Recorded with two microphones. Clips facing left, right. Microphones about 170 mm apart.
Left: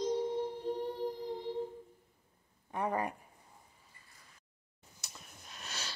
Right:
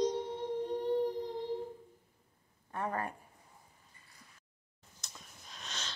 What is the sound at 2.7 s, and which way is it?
Speech, 15° left (ahead or behind).